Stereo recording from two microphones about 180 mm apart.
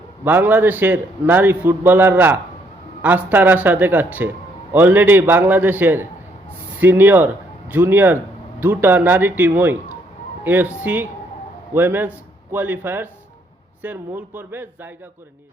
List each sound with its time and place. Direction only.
0.3 s a man's voice: 10° right (ahead or behind)